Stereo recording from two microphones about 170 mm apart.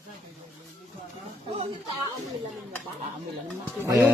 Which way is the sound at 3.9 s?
15° right (ahead or behind).